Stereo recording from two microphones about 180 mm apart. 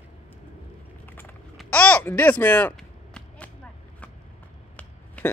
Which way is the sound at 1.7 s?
10° left (ahead or behind).